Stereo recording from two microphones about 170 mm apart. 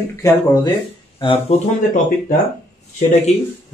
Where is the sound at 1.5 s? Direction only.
40° left (ahead or behind).